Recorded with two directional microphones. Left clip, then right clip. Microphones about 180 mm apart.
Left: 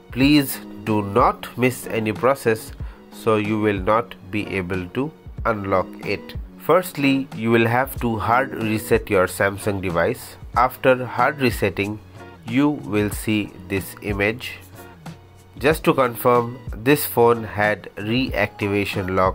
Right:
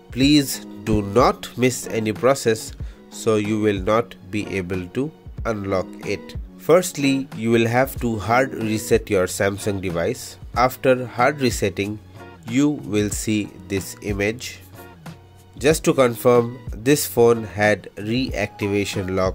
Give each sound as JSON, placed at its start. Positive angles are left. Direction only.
{"t": 0.1, "sound": "speech", "side_deg": -40}
{"t": 15.6, "sound": "speech", "side_deg": -45}